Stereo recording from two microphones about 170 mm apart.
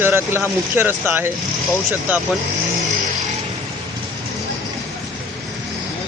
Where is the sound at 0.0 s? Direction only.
15° right (ahead or behind).